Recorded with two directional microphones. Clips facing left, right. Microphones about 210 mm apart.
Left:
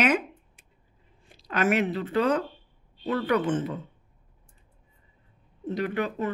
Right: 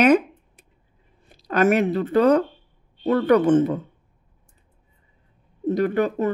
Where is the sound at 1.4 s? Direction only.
40° right (ahead or behind).